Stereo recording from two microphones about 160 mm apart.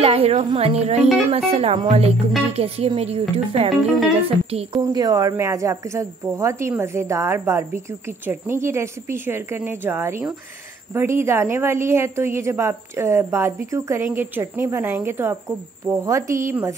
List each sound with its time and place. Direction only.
0.0 s speech: 40° right (ahead or behind)
4.7 s a woman's voice: 25° right (ahead or behind)